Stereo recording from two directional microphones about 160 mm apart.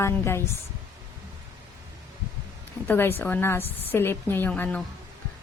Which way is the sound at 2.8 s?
15° left (ahead or behind).